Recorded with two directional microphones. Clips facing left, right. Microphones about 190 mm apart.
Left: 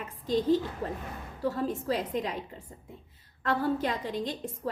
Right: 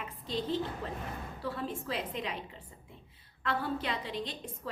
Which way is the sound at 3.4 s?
45° left (ahead or behind).